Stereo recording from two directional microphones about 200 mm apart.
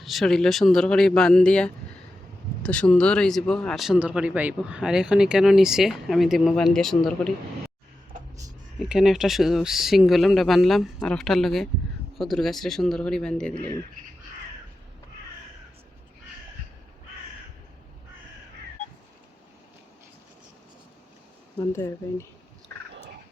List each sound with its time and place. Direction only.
0.0 s speech: centre (ahead or behind)
8.8 s speech: centre (ahead or behind)
21.6 s speech: 15° left (ahead or behind)